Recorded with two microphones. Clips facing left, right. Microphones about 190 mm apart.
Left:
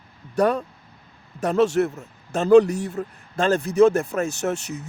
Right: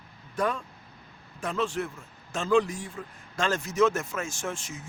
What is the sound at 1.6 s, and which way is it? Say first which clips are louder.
Speech: left 11 dB; 70° left (ahead or behind).